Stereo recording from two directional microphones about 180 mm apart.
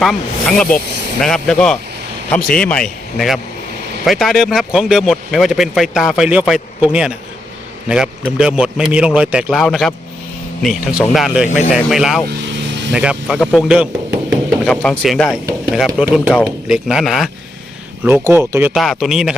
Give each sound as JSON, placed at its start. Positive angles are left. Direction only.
{"t": 0.0, "sound": "a man's voice", "side_deg": 0}
{"t": 12.3, "sound": "vehicle", "side_deg": -75}
{"t": 12.9, "sound": "speech", "side_deg": -5}
{"t": 14.7, "sound": "a man's voice", "side_deg": 5}
{"t": 18.0, "sound": "speech", "side_deg": -10}
{"t": 18.8, "sound": "a man's voice", "side_deg": 0}